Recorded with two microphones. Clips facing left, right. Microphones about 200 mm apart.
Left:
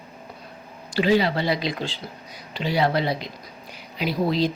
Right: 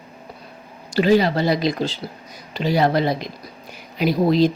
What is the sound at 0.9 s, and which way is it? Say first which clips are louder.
Speech: right 4 dB; 45° right (ahead or behind).